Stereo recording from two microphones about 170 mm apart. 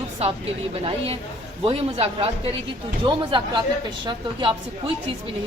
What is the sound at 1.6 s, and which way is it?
A woman's voice, 35° right (ahead or behind).